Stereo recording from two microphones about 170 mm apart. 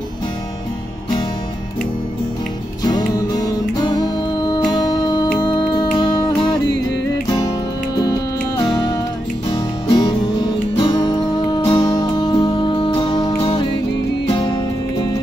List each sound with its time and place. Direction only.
3.4 s music: 25° left (ahead or behind)
13.4 s music: 35° left (ahead or behind)